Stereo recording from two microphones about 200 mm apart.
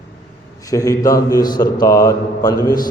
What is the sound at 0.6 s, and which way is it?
A man's voice, 15° left (ahead or behind).